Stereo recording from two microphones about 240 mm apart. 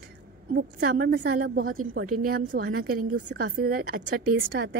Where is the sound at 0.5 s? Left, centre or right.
Right.